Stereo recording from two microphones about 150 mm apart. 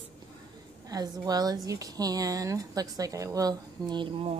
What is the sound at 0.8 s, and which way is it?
A woman's voice, 25° right (ahead or behind).